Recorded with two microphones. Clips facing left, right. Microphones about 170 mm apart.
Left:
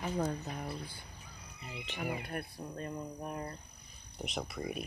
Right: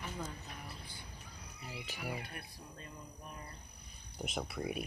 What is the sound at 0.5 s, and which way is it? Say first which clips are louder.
Speech: left 9 dB; 40° left (ahead or behind).